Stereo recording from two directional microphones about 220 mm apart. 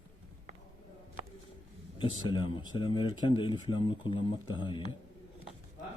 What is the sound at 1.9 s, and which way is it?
Speech, 20° left (ahead or behind).